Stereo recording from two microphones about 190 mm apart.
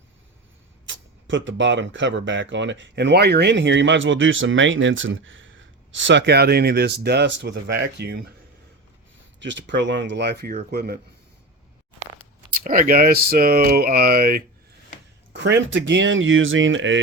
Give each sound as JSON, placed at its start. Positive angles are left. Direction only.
{"t": 0.9, "sound": "speech", "side_deg": -80}
{"t": 9.4, "sound": "speech", "side_deg": -70}
{"t": 12.5, "sound": "speech", "side_deg": -45}
{"t": 15.3, "sound": "speech", "side_deg": -65}